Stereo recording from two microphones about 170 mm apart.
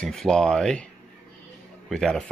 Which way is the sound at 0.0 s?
5° left (ahead or behind).